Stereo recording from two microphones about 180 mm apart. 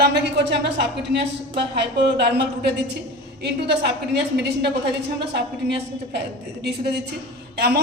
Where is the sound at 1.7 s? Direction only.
70° right (ahead or behind).